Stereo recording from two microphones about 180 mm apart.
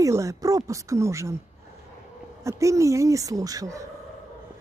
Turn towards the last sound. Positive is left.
turn(degrees=-20)  # may be behind; listen again after turning